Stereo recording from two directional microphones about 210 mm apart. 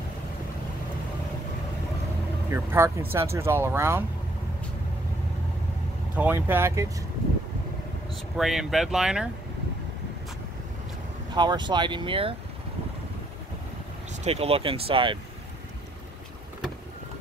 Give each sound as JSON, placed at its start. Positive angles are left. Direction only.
{"t": 2.5, "sound": "speech", "side_deg": -10}
{"t": 6.1, "sound": "speech", "side_deg": -10}
{"t": 8.4, "sound": "speech", "side_deg": 0}
{"t": 11.3, "sound": "speech", "side_deg": -20}
{"t": 14.2, "sound": "speech", "side_deg": -30}